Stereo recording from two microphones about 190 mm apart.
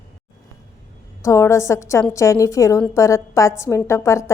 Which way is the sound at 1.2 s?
15° left (ahead or behind).